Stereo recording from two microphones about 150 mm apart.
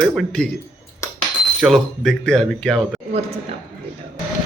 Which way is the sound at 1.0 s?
20° left (ahead or behind).